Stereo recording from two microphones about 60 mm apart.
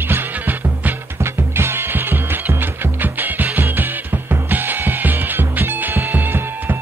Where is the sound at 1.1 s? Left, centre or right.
Right.